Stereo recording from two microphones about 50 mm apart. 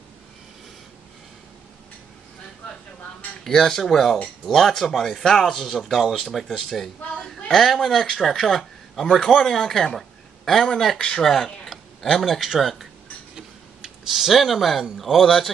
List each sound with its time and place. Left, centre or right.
3.4 s speech: centre
6.4 s a man's voice: centre
9.0 s a man's voice: centre
11.2 s speech: centre